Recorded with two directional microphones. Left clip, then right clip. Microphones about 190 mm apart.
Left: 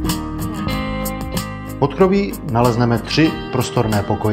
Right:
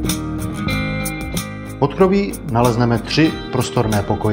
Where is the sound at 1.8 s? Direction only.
Centre (ahead or behind).